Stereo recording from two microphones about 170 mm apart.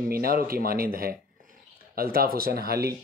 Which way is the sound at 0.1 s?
60° right (ahead or behind).